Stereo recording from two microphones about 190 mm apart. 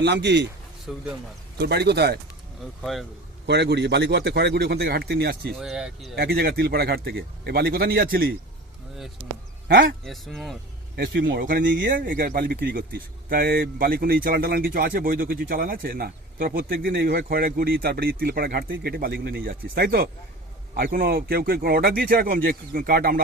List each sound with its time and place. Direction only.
0.0 s a man's voice: 65° right (ahead or behind)
0.9 s speech: 5° right (ahead or behind)
1.5 s a man's voice: 60° right (ahead or behind)
2.8 s speech: centre (ahead or behind)
3.4 s a man's voice: 65° right (ahead or behind)
5.5 s speech: 5° right (ahead or behind)
6.1 s speech: 55° right (ahead or behind)
9.6 s a man's voice: 60° right (ahead or behind)
10.0 s speech: centre (ahead or behind)
10.9 s a man's voice: 60° right (ahead or behind)
11.3 s speech: 45° right (ahead or behind)